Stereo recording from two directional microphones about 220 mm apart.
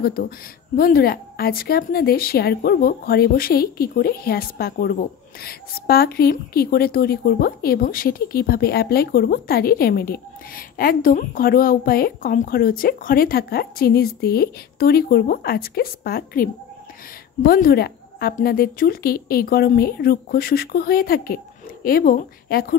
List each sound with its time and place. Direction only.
0.0 s a woman's voice: 45° left (ahead or behind)